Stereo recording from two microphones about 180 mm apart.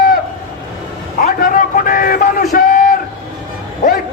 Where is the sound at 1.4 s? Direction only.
50° left (ahead or behind).